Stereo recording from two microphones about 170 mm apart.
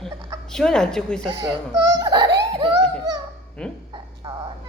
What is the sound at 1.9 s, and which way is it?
Speech, 20° right (ahead or behind).